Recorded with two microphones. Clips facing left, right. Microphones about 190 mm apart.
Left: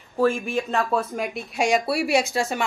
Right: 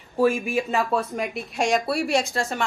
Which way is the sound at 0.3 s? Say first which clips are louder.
Right 1 dB; centre (ahead or behind).